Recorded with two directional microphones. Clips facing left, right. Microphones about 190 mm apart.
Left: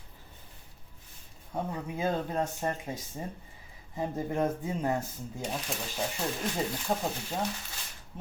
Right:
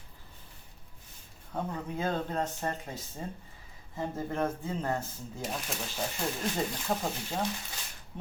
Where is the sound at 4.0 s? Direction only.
15° left (ahead or behind).